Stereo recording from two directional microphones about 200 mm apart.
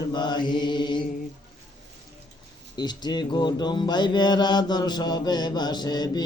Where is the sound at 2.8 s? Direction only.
20° left (ahead or behind).